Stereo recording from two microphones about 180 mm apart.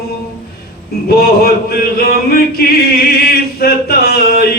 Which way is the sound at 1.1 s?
60° left (ahead or behind).